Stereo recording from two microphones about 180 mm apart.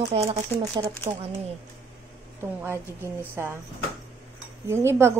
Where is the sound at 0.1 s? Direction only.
35° right (ahead or behind).